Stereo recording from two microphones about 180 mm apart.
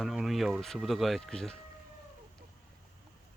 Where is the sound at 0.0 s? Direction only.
Centre (ahead or behind).